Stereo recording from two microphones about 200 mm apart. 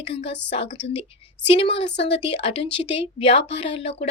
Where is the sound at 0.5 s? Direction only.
30° left (ahead or behind).